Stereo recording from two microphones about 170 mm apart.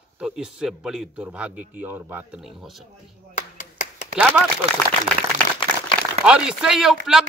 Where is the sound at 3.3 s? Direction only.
45° left (ahead or behind).